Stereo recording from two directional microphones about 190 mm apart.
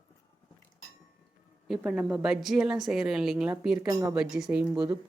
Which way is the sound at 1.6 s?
Centre (ahead or behind).